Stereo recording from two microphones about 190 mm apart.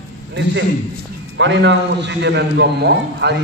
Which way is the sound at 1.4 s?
70° right (ahead or behind).